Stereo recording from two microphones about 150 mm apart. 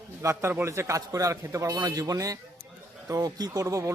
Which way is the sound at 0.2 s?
15° right (ahead or behind).